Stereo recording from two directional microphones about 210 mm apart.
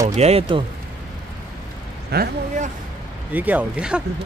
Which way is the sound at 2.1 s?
40° right (ahead or behind).